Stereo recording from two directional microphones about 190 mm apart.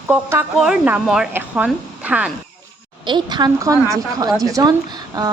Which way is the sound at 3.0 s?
25° right (ahead or behind).